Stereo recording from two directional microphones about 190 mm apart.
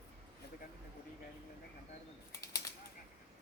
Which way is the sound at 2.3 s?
15° left (ahead or behind).